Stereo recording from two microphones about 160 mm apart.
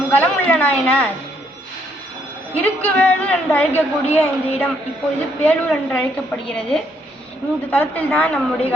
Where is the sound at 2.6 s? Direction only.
10° left (ahead or behind).